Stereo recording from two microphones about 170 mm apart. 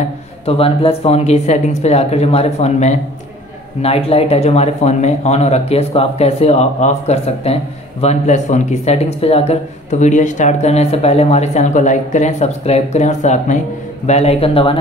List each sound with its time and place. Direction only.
0.5 s speech: 35° left (ahead or behind)